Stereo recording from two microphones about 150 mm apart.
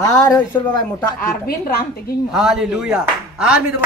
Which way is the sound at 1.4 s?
90° left.